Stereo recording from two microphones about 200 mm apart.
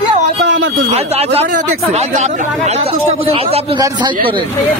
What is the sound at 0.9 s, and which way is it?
Speech, 30° right (ahead or behind).